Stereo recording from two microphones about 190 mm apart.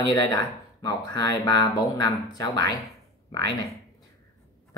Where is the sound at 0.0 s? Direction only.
20° left (ahead or behind).